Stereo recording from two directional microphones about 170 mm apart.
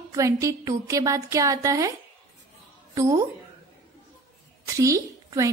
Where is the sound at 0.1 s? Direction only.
20° right (ahead or behind).